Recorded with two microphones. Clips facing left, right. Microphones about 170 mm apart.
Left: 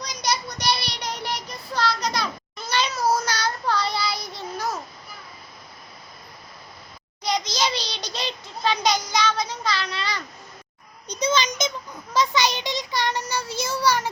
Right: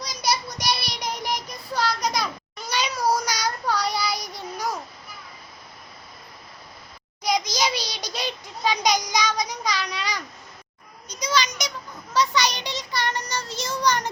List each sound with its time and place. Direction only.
0.0 s child singing: 10° right (ahead or behind)
7.2 s child singing: 10° right (ahead or behind)
11.1 s child singing: 25° left (ahead or behind)
12.1 s a sound: 15° left (ahead or behind)
12.5 s child singing: 15° right (ahead or behind)
12.7 s child singing: 15° left (ahead or behind)